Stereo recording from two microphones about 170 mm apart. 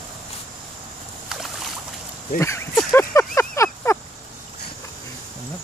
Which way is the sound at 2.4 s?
15° left (ahead or behind).